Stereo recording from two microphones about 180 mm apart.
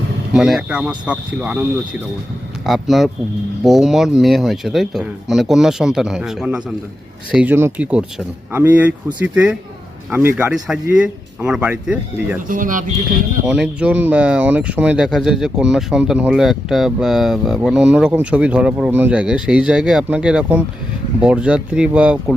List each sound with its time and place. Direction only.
0.3 s speech: centre (ahead or behind)
2.6 s speech: centre (ahead or behind)
12.4 s speech: 45° right (ahead or behind)
13.4 s speech: 5° right (ahead or behind)